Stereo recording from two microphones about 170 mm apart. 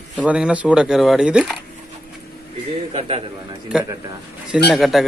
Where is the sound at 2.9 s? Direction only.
35° right (ahead or behind).